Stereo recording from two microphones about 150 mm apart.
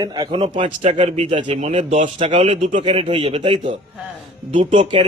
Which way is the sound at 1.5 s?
50° right (ahead or behind).